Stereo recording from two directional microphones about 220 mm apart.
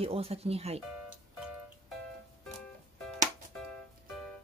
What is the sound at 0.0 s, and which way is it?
Speech, 25° right (ahead or behind).